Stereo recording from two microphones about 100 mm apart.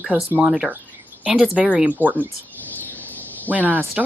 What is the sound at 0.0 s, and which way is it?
A woman's voice, 15° right (ahead or behind).